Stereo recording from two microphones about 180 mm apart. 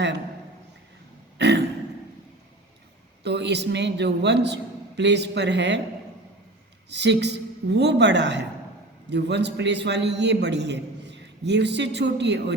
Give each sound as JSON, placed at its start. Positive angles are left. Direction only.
{"t": 1.4, "sound": "throat clearing", "side_deg": -70}
{"t": 3.2, "sound": "a man's voice", "side_deg": -70}
{"t": 6.9, "sound": "a man's voice", "side_deg": -75}